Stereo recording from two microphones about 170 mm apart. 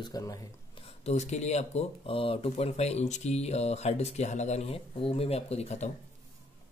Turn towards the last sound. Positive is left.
turn(degrees=40)  # may be behind; listen again after turning